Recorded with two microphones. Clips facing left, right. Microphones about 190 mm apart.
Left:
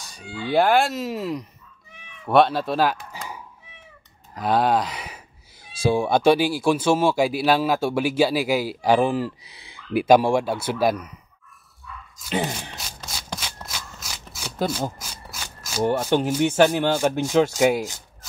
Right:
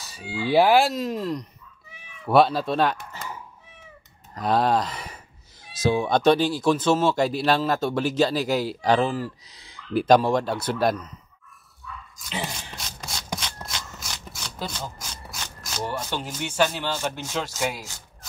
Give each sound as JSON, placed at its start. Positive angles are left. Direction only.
{"t": 0.0, "sound": "speech", "side_deg": -5}
{"t": 4.4, "sound": "speech", "side_deg": 0}
{"t": 12.3, "sound": "speech", "side_deg": 55}
{"t": 12.7, "sound": "a sound", "side_deg": 0}
{"t": 13.4, "sound": "shuffling cards", "side_deg": 10}
{"t": 14.7, "sound": "rub", "side_deg": 5}
{"t": 15.8, "sound": "speech", "side_deg": 55}